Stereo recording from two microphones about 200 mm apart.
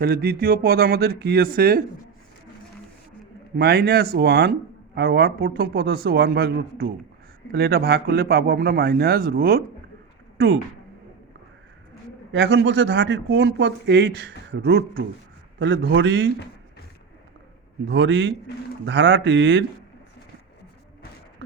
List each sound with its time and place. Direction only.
0.0 s a man's voice: 50° right (ahead or behind)
3.5 s a man's voice: 55° right (ahead or behind)
12.3 s a man's voice: 60° right (ahead or behind)
17.8 s speech: 65° right (ahead or behind)